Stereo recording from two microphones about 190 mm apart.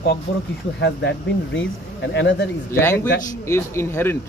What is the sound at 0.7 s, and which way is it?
Speech, 65° left (ahead or behind).